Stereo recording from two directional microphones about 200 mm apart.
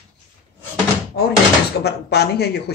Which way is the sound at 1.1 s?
50° left (ahead or behind).